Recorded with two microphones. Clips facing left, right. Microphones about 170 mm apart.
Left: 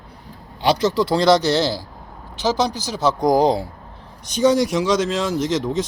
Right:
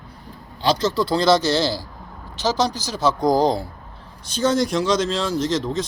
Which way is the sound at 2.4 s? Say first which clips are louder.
Left 1 dB; 60° left (ahead or behind).